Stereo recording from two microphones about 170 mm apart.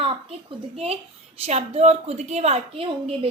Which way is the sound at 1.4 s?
40° right (ahead or behind).